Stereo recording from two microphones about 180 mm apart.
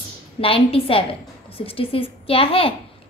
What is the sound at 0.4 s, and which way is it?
A woman's voice, 30° left (ahead or behind).